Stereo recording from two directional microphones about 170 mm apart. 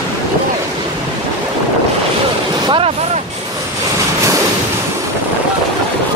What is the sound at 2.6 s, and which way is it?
Vehicle, 35° right (ahead or behind).